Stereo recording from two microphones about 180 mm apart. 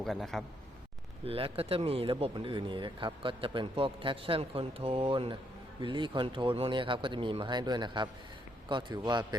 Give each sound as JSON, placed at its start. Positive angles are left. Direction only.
{"t": 0.0, "sound": "a man's voice", "side_deg": 0}
{"t": 1.2, "sound": "speech", "side_deg": -30}